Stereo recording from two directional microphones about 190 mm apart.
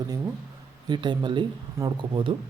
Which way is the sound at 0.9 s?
25° right (ahead or behind).